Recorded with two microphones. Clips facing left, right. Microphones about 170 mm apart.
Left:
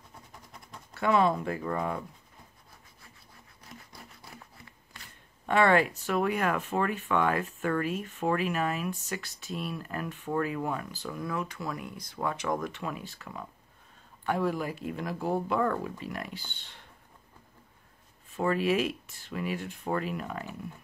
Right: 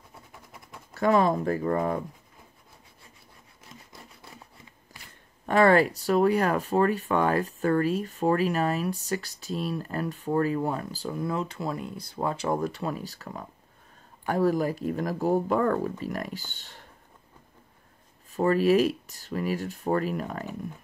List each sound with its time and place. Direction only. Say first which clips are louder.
0.9 s speech: right 3 dB; 40° right (ahead or behind)
5.5 s speech: right 4 dB; 40° right (ahead or behind)
9.3 s speech: right 5 dB; centre (ahead or behind)
9.6 s speech: right 5 dB; 35° right (ahead or behind)
18.3 s speech: right 6 dB; 40° right (ahead or behind)